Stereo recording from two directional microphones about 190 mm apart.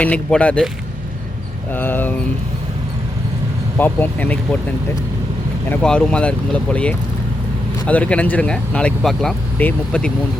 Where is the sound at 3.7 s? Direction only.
10° left (ahead or behind).